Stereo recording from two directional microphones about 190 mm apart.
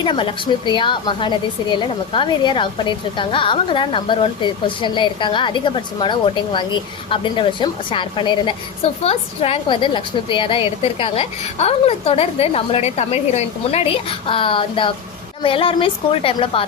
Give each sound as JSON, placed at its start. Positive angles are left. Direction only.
{"t": 0.0, "sound": "a woman's voice", "side_deg": 25}